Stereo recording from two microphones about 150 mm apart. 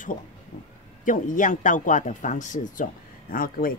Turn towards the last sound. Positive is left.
turn(degrees=70)  # may be behind; listen again after turning